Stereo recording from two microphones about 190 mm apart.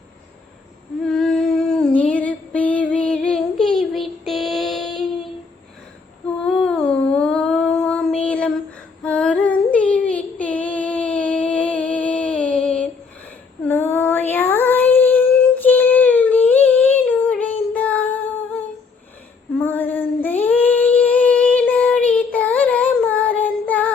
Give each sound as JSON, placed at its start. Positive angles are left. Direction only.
{"t": 1.0, "sound": "female singing", "side_deg": 5}
{"t": 6.4, "sound": "humming", "side_deg": 5}
{"t": 7.2, "sound": "a sound", "side_deg": 5}
{"t": 9.0, "sound": "female singing", "side_deg": 5}
{"t": 13.7, "sound": "child singing", "side_deg": 10}
{"t": 19.5, "sound": "female singing", "side_deg": 10}